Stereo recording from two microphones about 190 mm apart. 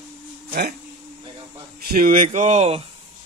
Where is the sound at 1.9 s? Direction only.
50° right (ahead or behind); by 2.8 s 35° right (ahead or behind).